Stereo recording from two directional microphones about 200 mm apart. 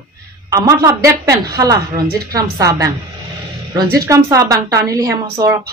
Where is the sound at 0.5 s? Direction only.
15° right (ahead or behind).